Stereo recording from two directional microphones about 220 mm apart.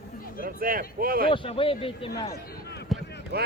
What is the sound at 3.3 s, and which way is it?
Speech, 45° right (ahead or behind).